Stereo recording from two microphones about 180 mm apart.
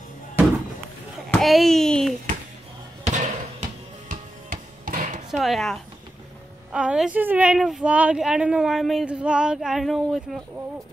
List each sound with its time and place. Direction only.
1.3 s a sound: centre (ahead or behind)
3.0 s basketball bounce: 40° right (ahead or behind)
4.1 s music: 50° right (ahead or behind)
5.3 s a woman's voice: centre (ahead or behind)